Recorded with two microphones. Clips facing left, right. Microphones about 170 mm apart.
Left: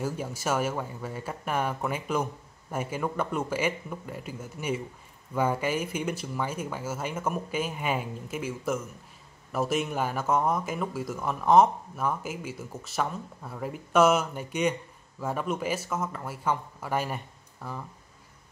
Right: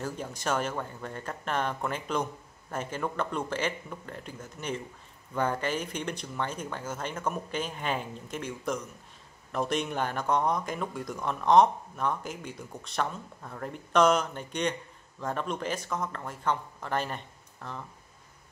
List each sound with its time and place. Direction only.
0.0 s speech: 10° left (ahead or behind)